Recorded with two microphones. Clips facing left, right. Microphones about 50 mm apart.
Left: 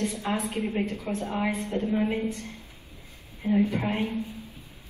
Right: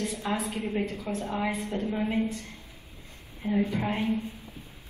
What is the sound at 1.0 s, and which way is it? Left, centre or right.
A woman's voice, centre.